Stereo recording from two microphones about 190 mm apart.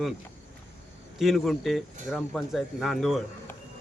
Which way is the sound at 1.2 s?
Centre (ahead or behind).